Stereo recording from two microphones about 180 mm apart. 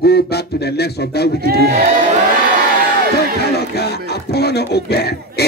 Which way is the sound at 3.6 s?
65° left (ahead or behind).